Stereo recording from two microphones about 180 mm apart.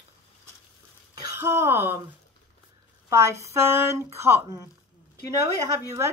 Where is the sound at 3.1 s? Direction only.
15° right (ahead or behind).